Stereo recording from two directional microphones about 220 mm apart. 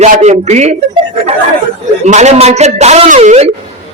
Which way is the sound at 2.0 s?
30° right (ahead or behind).